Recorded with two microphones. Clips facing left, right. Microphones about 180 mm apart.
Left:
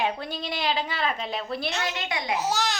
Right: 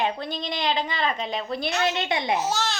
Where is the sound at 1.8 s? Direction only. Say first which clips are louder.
Right 6 dB; 25° right (ahead or behind).